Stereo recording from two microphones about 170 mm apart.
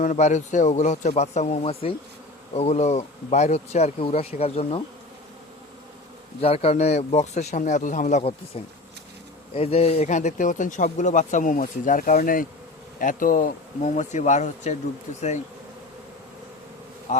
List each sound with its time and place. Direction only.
0.0 s speech: 45° left (ahead or behind)
6.4 s speech: 35° left (ahead or behind)
17.1 s speech: 45° left (ahead or behind)